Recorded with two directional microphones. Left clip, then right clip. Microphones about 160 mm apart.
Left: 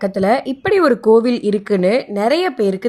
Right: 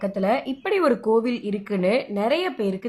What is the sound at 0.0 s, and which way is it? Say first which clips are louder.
Speech: left 7 dB; 40° left (ahead or behind).